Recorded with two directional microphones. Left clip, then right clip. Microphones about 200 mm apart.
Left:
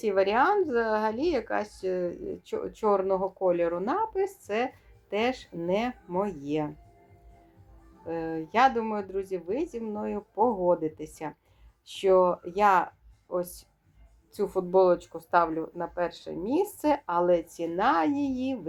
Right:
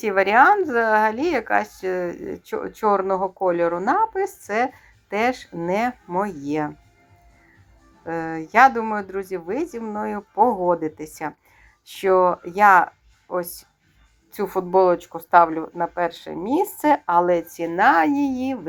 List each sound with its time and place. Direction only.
0.0 s a woman's voice: 30° right (ahead or behind)
8.0 s speech: 30° right (ahead or behind)